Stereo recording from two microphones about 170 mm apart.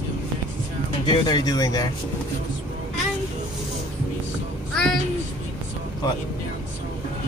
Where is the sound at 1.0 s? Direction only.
25° left (ahead or behind).